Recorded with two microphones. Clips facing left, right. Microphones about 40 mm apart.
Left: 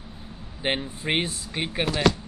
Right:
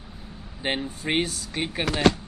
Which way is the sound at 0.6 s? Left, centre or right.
Left.